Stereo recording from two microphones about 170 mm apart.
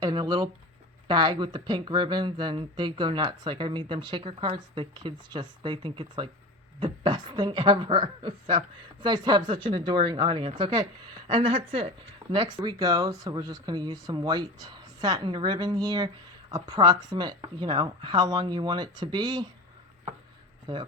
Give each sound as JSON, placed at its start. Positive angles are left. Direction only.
{"t": 0.0, "sound": "speech", "side_deg": -25}
{"t": 20.7, "sound": "speech", "side_deg": -25}